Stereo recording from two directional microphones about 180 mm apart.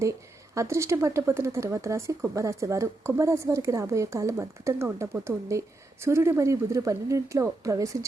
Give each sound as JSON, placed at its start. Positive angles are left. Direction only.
{"t": 0.5, "sound": "speech", "side_deg": -15}